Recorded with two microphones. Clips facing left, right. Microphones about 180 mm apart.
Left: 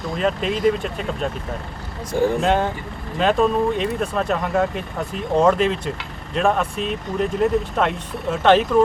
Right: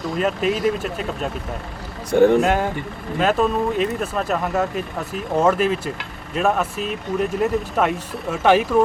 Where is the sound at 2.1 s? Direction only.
65° right (ahead or behind).